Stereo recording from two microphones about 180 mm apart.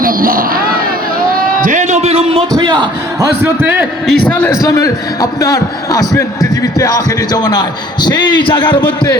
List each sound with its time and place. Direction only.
0.0 s speech: 50° right (ahead or behind)
1.6 s a man's voice: 45° right (ahead or behind); by 3.2 s 25° right (ahead or behind)
3.4 s a man's voice: 10° right (ahead or behind)
4.1 s a man's voice: 10° left (ahead or behind); by 9.1 s 25° left (ahead or behind)